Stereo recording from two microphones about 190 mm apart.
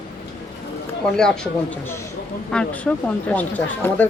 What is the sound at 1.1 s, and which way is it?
Speech, 5° left (ahead or behind).